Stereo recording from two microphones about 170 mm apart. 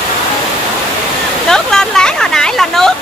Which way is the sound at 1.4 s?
5° left (ahead or behind).